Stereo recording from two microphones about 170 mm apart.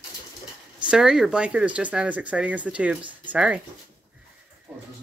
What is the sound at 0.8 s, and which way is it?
Speech, 5° right (ahead or behind).